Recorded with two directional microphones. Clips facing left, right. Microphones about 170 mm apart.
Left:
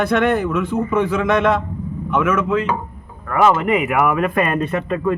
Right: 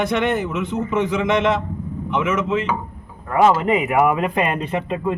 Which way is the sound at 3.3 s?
30° right (ahead or behind).